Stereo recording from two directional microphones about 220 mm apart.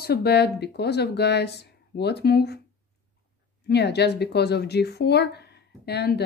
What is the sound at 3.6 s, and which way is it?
A woman's voice, 50° left (ahead or behind).